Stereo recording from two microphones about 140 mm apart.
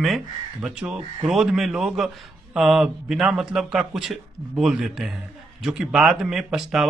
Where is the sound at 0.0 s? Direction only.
5° right (ahead or behind).